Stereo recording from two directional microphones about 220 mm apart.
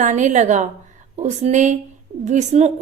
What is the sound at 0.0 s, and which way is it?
A woman's voice, 35° right (ahead or behind).